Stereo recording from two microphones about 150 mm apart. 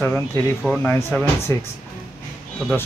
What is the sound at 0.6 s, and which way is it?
Speech, 10° left (ahead or behind).